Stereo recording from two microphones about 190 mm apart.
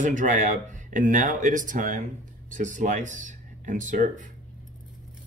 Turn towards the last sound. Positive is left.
turn(degrees=-40)  # may be behind; listen again after turning